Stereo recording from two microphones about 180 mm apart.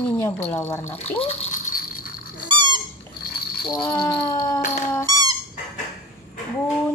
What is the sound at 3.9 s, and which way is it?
Speech, 20° left (ahead or behind).